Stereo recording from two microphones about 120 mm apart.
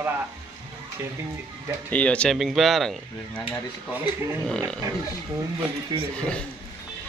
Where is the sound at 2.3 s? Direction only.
Centre (ahead or behind).